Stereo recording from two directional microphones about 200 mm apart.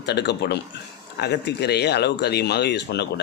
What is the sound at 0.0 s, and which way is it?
Speech, 55° left (ahead or behind).